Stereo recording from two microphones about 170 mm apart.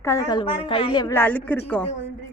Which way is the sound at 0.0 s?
20° left (ahead or behind).